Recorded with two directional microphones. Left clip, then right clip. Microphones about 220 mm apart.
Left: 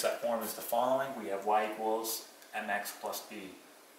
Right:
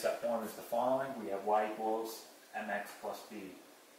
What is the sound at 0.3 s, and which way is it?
Speech, 15° right (ahead or behind).